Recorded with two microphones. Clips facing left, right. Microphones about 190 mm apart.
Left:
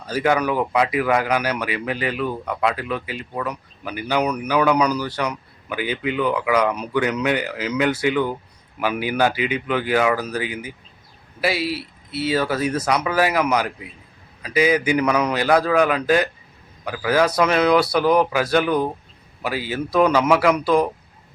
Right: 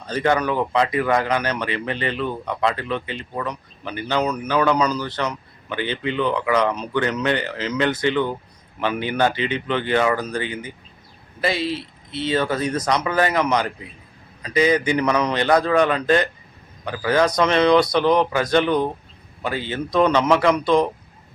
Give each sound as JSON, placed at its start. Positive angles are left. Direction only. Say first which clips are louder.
{"t": 0.0, "sound": "speech", "louder": "even", "side_deg": 10}